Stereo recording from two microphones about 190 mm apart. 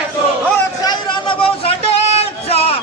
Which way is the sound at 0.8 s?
25° left (ahead or behind).